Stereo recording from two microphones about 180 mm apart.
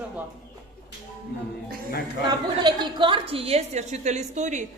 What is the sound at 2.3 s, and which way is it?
A woman's voice, 25° right (ahead or behind).